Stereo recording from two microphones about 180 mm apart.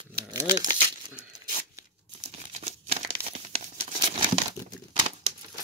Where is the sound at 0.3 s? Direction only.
25° right (ahead or behind).